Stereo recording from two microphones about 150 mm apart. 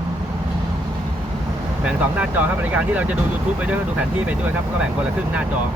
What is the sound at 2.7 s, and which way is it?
Speech, 10° right (ahead or behind).